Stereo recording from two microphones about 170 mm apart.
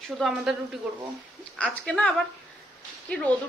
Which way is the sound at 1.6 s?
5° left (ahead or behind).